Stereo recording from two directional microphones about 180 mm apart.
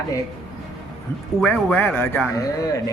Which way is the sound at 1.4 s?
5° left (ahead or behind).